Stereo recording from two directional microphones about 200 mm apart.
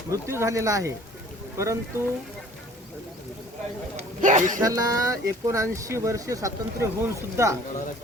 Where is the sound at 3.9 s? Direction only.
40° right (ahead or behind).